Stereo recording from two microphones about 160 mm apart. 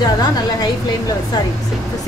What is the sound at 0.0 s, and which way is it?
A woman's voice, 25° left (ahead or behind).